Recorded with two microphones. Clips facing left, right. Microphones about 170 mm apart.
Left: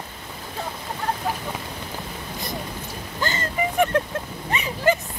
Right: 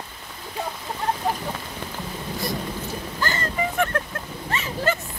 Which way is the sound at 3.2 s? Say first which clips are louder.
Left 1 dB; 20° left (ahead or behind).